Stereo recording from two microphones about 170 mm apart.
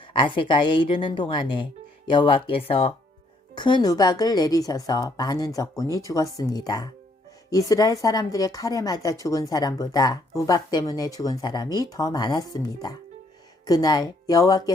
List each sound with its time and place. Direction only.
0.0 s a woman's voice: 30° left (ahead or behind)